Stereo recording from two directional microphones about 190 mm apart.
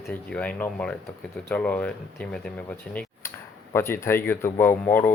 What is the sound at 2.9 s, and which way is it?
Tick-tock, 10° left (ahead or behind).